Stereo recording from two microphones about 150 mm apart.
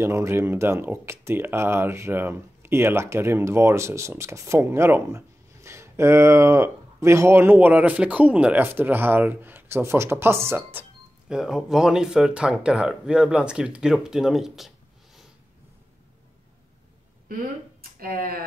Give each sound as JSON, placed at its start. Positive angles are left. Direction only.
{"t": 0.0, "sound": "speech", "side_deg": -20}
{"t": 17.9, "sound": "speech", "side_deg": -75}